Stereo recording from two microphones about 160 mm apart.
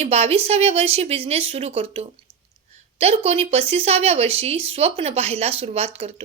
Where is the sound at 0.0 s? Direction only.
40° right (ahead or behind).